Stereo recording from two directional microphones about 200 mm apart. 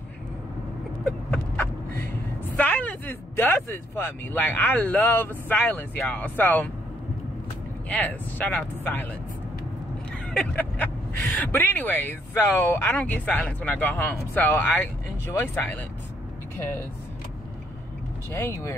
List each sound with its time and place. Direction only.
1.0 s vehicle: 5° left (ahead or behind)
2.5 s speech: 5° left (ahead or behind)
7.9 s speech: 10° left (ahead or behind)
10.3 s speech: 5° left (ahead or behind)
18.3 s speech: 15° left (ahead or behind)